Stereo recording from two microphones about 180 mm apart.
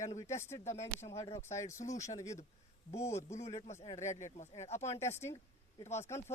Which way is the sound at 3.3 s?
35° left (ahead or behind).